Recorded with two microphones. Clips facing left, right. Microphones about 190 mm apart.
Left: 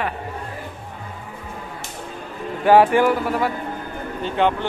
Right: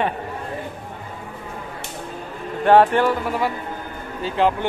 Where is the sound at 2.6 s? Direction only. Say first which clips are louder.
Left 1 dB; 10° left (ahead or behind).